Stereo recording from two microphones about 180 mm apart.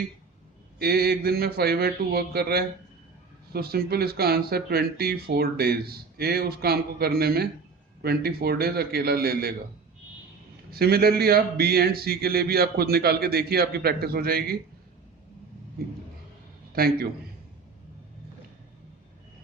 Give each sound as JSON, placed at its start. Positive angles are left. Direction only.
{"t": 0.8, "sound": "speech", "side_deg": -60}
{"t": 10.7, "sound": "speech", "side_deg": -60}
{"t": 16.7, "sound": "speech", "side_deg": -55}